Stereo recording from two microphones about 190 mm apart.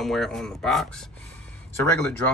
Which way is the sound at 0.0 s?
Centre (ahead or behind).